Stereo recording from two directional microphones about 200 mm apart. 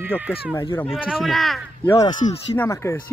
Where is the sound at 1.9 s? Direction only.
15° left (ahead or behind).